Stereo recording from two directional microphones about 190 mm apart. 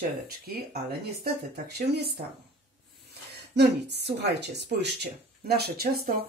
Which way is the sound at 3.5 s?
60° right (ahead or behind).